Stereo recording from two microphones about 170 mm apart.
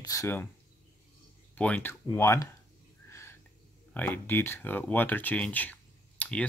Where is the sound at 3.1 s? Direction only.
15° left (ahead or behind).